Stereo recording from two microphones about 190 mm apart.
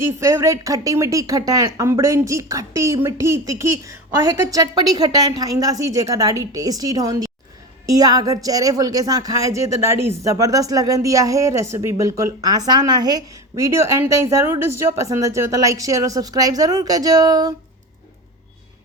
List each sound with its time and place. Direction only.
0.2 s speech: 15° right (ahead or behind)